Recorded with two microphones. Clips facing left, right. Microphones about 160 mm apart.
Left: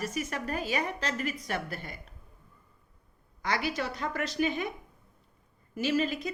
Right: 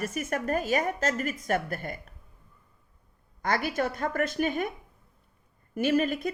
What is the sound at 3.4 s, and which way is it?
Speech, 50° right (ahead or behind).